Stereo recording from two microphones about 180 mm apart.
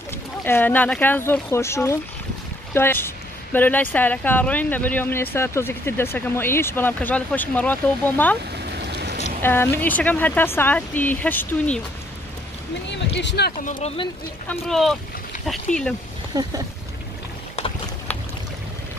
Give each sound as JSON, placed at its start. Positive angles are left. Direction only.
{"t": 0.4, "sound": "speech", "side_deg": 10}
{"t": 8.6, "sound": "a sound", "side_deg": -65}
{"t": 9.4, "sound": "speech", "side_deg": 10}
{"t": 12.9, "sound": "speech", "side_deg": 75}
{"t": 13.7, "sound": "speech", "side_deg": 30}
{"t": 14.7, "sound": "speech", "side_deg": 0}
{"t": 16.3, "sound": "speech", "side_deg": -20}